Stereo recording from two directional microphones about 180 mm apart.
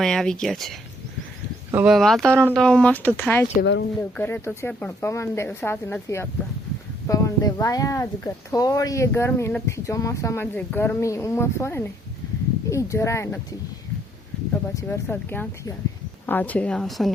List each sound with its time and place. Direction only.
0.0 s speech: 5° left (ahead or behind)
3.6 s speech: 75° left (ahead or behind)
4.2 s speech: 10° left (ahead or behind)
14.5 s speech: 15° left (ahead or behind)